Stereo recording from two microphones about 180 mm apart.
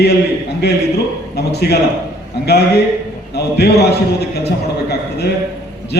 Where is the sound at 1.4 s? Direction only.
65° left (ahead or behind).